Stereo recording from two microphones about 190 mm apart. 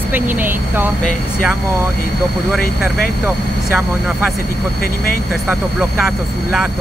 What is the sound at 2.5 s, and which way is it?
Speech, 10° right (ahead or behind).